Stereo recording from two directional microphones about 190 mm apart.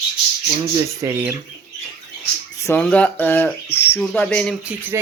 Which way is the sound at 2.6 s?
10° left (ahead or behind).